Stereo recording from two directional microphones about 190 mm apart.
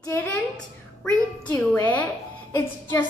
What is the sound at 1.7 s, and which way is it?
Speech, 10° left (ahead or behind).